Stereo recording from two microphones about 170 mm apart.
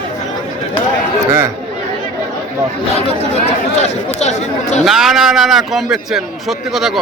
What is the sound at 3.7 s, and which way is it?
Speech, 40° left (ahead or behind).